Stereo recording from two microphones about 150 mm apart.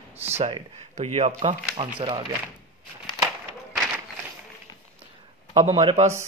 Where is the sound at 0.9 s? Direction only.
50° right (ahead or behind).